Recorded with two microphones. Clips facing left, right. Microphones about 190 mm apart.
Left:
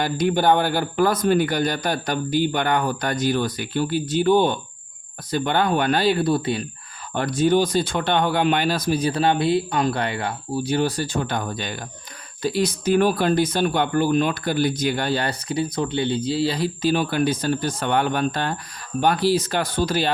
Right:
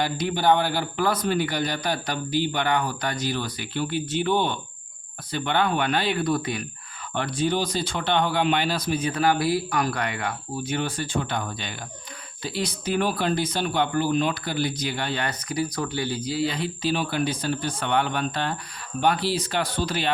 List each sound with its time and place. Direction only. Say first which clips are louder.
0.0 s speech: left 4 dB; 50° left (ahead or behind); by 6.7 s 30° left (ahead or behind)
7.1 s speech: left 6 dB; 45° left (ahead or behind)